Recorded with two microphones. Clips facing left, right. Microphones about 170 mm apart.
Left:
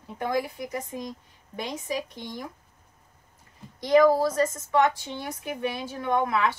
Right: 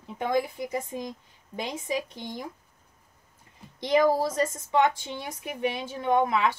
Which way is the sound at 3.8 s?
20° right (ahead or behind).